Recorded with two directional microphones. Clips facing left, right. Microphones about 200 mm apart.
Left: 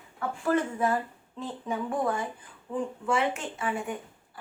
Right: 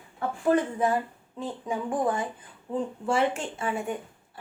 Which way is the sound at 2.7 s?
30° right (ahead or behind).